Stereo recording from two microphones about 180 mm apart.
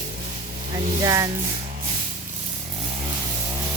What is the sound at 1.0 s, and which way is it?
Speech, 20° right (ahead or behind).